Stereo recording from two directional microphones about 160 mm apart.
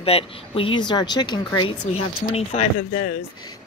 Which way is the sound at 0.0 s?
35° left (ahead or behind).